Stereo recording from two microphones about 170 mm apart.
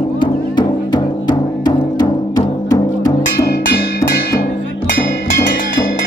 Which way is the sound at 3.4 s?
60° left (ahead or behind).